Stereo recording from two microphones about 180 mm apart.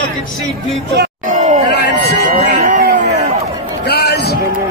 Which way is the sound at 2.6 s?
60° right (ahead or behind).